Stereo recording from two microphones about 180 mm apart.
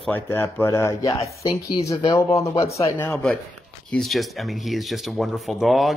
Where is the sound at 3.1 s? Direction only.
5° left (ahead or behind).